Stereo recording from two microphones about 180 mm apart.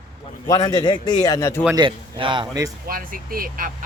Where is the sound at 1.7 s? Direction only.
25° right (ahead or behind).